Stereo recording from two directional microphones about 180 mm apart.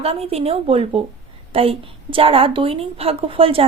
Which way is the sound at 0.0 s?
35° right (ahead or behind).